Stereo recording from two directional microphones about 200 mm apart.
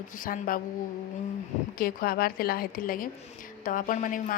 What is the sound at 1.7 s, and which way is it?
A woman's voice, 45° left (ahead or behind).